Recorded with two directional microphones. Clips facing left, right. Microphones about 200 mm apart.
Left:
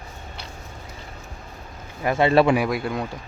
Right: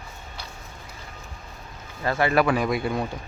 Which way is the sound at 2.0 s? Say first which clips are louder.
Left 4 dB; 20° left (ahead or behind).